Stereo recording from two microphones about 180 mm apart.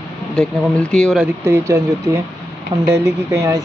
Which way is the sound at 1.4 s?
15° right (ahead or behind).